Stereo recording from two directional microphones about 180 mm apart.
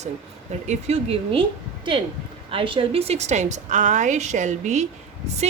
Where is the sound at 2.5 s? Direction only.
30° right (ahead or behind).